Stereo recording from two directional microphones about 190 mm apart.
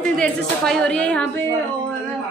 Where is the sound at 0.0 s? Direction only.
5° left (ahead or behind).